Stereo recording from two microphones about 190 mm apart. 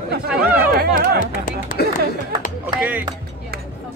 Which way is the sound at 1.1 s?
50° left (ahead or behind).